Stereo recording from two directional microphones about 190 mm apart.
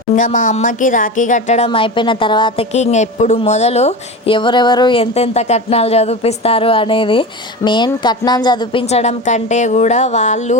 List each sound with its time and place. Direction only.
0.2 s a woman's voice: 40° left (ahead or behind)